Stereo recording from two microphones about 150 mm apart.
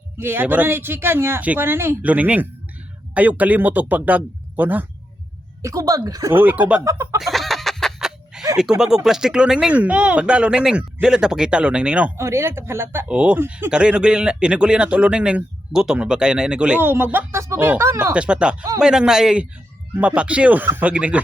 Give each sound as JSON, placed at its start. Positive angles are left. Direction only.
{"t": 0.2, "sound": "speech", "side_deg": -15}
{"t": 5.6, "sound": "speech", "side_deg": -25}
{"t": 6.3, "sound": "speech", "side_deg": -10}
{"t": 6.8, "sound": "speech", "side_deg": -20}
{"t": 7.2, "sound": "chicken", "side_deg": 0}
{"t": 8.7, "sound": "a man's voice", "side_deg": -5}
{"t": 18.1, "sound": "a man's voice", "side_deg": -5}